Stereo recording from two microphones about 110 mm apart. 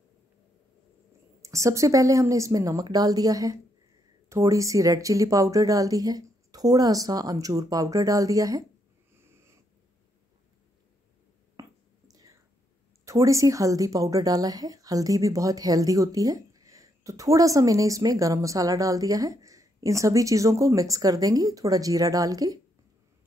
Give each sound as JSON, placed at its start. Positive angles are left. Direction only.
{"t": 1.4, "sound": "a woman's voice", "side_deg": -30}
{"t": 9.2, "sound": "wheeze", "side_deg": -25}
{"t": 11.6, "sound": "a sound", "side_deg": -30}
{"t": 12.1, "sound": "whispering", "side_deg": -35}
{"t": 13.0, "sound": "speech", "side_deg": -30}